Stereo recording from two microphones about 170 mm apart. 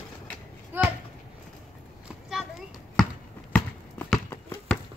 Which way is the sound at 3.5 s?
10° left (ahead or behind).